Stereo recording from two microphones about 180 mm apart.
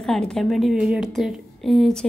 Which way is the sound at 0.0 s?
5° left (ahead or behind).